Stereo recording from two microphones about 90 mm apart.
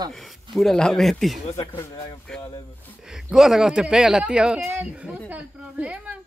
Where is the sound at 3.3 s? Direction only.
5° right (ahead or behind).